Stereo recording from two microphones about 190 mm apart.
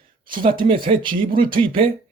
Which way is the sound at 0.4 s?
25° right (ahead or behind).